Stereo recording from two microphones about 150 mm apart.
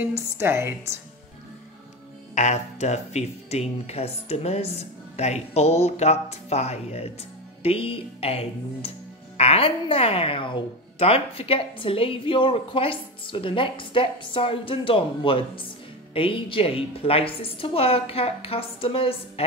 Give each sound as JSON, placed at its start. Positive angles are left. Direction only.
{"t": 0.0, "sound": "a woman's voice", "side_deg": -15}
{"t": 2.3, "sound": "a woman's voice", "side_deg": 50}